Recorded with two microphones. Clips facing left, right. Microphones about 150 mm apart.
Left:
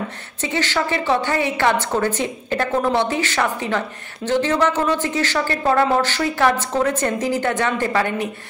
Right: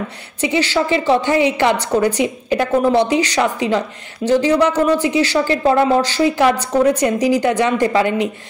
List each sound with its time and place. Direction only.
0.4 s a woman's voice: 15° right (ahead or behind)